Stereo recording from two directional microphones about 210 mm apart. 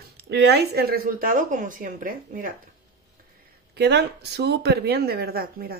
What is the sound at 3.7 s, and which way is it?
Speech, 50° right (ahead or behind).